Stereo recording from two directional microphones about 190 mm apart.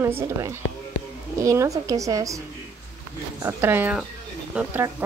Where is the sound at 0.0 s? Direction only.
15° right (ahead or behind).